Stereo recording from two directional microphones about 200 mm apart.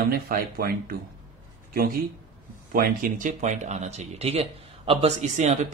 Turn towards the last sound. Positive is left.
turn(degrees=-35)  # may be behind; listen again after turning